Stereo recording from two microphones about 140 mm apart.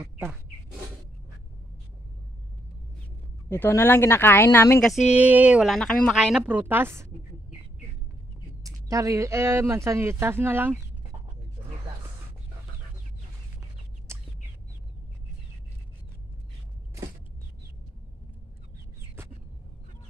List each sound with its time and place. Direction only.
3.4 s speech: 15° left (ahead or behind)
5.1 s a woman's voice: 10° right (ahead or behind)
5.8 s speech: 5° left (ahead or behind)
6.1 s a woman's voice: 5° right (ahead or behind)
8.6 s speech: 25° right (ahead or behind)
14.1 s bird: 20° right (ahead or behind)